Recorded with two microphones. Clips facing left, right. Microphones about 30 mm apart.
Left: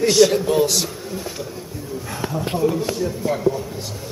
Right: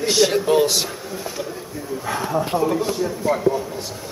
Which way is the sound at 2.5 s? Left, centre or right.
Centre.